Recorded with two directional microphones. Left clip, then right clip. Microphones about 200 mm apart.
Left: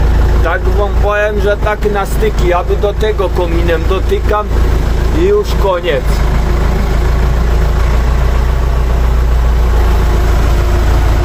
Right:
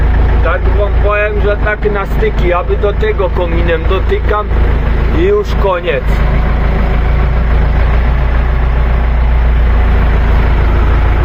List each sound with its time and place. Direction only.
1.1 s speech: 30° left (ahead or behind)
5.2 s speech: 5° left (ahead or behind)